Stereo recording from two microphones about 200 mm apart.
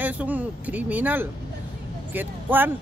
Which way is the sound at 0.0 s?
10° right (ahead or behind).